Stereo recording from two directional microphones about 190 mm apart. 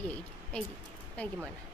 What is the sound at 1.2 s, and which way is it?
Speech, 5° left (ahead or behind).